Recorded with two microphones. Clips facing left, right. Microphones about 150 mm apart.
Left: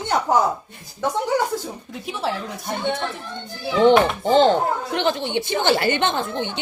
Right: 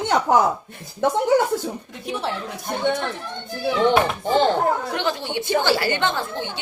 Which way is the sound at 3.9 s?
20° left (ahead or behind).